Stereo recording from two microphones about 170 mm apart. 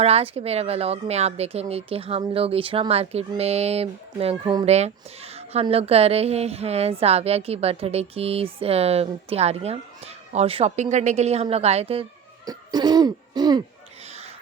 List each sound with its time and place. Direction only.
0.0 s speech: 35° right (ahead or behind)
12.5 s cough: 25° right (ahead or behind)